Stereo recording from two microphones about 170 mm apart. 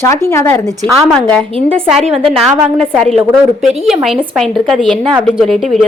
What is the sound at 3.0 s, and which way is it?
A woman's voice, centre (ahead or behind).